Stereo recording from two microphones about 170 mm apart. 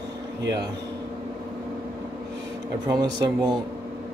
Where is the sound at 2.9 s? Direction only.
25° right (ahead or behind).